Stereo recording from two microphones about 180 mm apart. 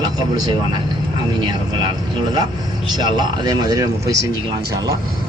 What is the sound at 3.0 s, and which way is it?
Speech, 25° right (ahead or behind).